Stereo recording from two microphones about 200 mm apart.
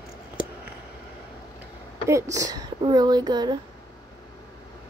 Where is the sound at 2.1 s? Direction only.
15° right (ahead or behind).